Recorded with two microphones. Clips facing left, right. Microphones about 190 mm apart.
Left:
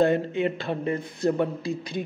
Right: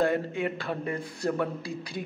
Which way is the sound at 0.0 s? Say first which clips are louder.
Left 4 dB; 25° left (ahead or behind).